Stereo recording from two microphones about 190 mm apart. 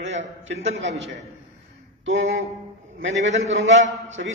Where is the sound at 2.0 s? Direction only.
80° right.